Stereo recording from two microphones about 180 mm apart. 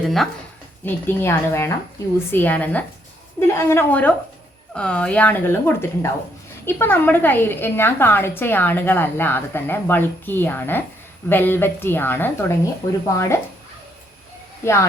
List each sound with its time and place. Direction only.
0.9 s a woman's voice: 10° left (ahead or behind)
14.6 s speech: 15° left (ahead or behind)